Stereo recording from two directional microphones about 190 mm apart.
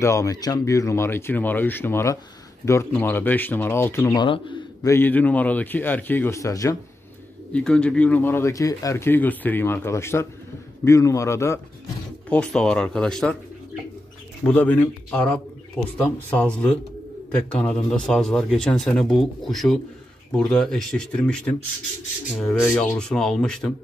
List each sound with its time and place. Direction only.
0.0 s speech: 15° left (ahead or behind)
4.9 s speech: 10° left (ahead or behind)
7.5 s speech: 5° left (ahead or behind)
12.3 s speech: 5° left (ahead or behind)
14.4 s speech: 10° left (ahead or behind)